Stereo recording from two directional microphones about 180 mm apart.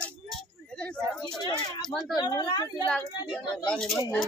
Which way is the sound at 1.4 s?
25° left (ahead or behind).